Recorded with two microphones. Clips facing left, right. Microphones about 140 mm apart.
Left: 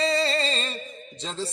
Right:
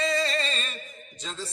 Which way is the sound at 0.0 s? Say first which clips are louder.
Left 3 dB; 30° left (ahead or behind).